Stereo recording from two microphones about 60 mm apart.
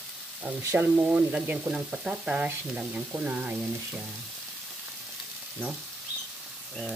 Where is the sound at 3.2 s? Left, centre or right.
Right.